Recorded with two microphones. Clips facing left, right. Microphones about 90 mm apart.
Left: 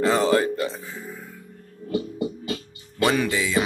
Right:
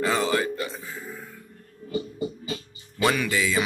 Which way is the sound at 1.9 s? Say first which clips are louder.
Left 3 dB; 70° left (ahead or behind).